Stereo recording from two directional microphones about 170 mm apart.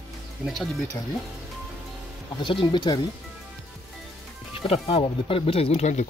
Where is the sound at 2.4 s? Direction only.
25° left (ahead or behind).